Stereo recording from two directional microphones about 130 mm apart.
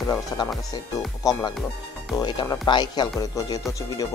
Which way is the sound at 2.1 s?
30° left (ahead or behind).